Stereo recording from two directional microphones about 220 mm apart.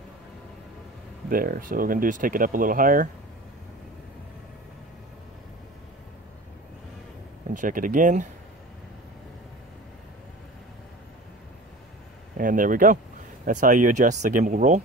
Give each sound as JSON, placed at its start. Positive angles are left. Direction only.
{"t": 1.3, "sound": "speech", "side_deg": -40}
{"t": 7.5, "sound": "speech", "side_deg": -40}
{"t": 12.4, "sound": "speech", "side_deg": -40}